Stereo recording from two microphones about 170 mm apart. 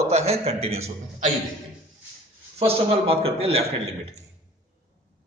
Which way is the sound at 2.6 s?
35° right (ahead or behind).